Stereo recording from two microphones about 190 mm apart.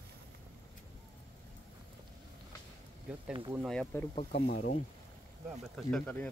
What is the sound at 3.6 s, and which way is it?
Speech, 5° left (ahead or behind).